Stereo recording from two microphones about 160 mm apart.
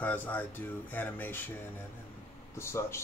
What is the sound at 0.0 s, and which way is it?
Speech, 10° left (ahead or behind).